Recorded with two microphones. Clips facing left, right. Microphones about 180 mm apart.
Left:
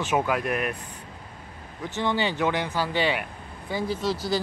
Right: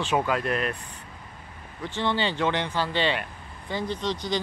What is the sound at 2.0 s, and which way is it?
Speech, 10° left (ahead or behind).